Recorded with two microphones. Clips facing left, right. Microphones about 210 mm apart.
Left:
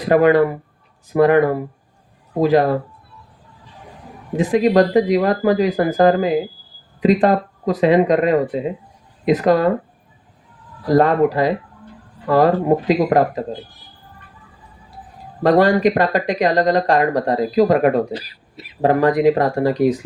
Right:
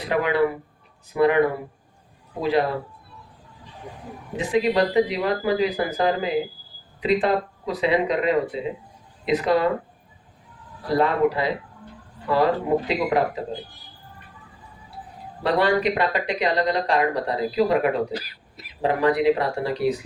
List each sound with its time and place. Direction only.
0.0 s speech: 45° left (ahead or behind)
4.4 s speech: 50° left (ahead or behind)
10.8 s speech: 45° left (ahead or behind)
15.4 s speech: 45° left (ahead or behind)
18.1 s a sound: 30° left (ahead or behind)
18.8 s speech: 45° left (ahead or behind)